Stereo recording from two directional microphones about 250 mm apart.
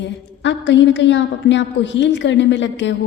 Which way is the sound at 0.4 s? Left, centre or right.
Left.